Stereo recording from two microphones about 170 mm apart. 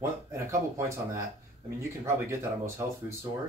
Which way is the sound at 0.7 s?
15° right (ahead or behind).